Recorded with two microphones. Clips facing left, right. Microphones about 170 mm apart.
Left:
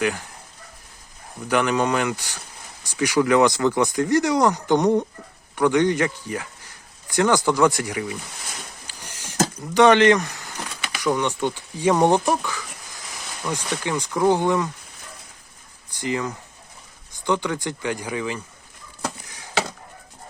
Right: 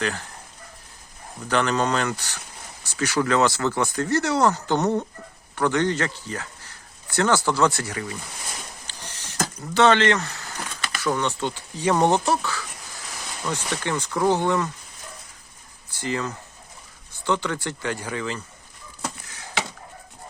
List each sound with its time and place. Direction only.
0.0 s speech: 15° left (ahead or behind)
1.5 s speech: 10° left (ahead or behind)
8.9 s a sound: 10° left (ahead or behind)
9.6 s speech: 15° left (ahead or behind)
16.0 s speech: 15° left (ahead or behind)